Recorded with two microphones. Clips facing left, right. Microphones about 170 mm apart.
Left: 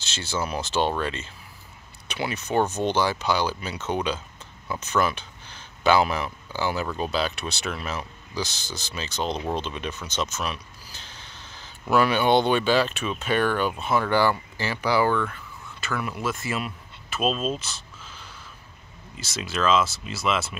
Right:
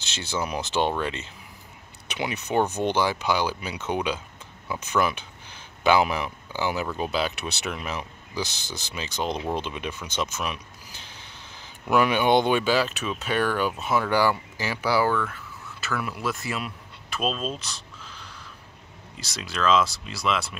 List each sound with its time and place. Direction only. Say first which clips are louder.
0.0 s speech: even; 15° right (ahead or behind); by 20.5 s 5° left (ahead or behind)